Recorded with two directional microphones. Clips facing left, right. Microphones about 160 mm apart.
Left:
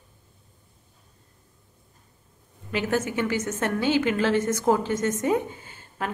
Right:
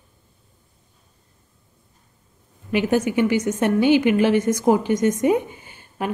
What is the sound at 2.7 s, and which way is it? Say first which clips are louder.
A woman's voice: right 6 dB; 15° right (ahead or behind).